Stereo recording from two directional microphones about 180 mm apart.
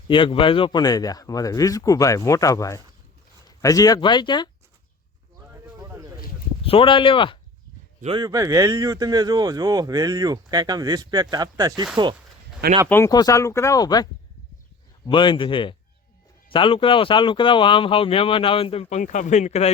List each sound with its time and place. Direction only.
0.1 s speech: 30° left (ahead or behind)
6.7 s speech: 30° left (ahead or behind)
8.0 s speech: 25° right (ahead or behind)
8.3 s speech: 15° right (ahead or behind)
12.9 s speech: 15° left (ahead or behind); by 19.7 s 35° left (ahead or behind)